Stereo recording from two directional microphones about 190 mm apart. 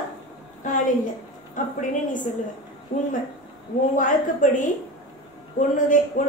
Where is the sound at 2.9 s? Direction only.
45° left (ahead or behind).